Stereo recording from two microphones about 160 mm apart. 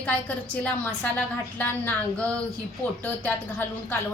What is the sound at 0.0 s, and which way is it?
A woman's voice, 10° left (ahead or behind).